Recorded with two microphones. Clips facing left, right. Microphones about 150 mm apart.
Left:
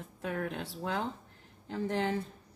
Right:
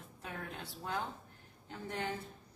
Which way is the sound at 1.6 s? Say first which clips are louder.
Left 8 dB; 90° left.